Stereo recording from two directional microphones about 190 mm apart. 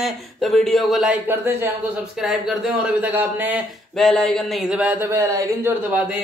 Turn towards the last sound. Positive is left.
turn(degrees=-10)  # may be behind; listen again after turning